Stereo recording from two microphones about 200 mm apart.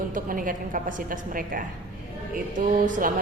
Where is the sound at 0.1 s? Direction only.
45° right (ahead or behind).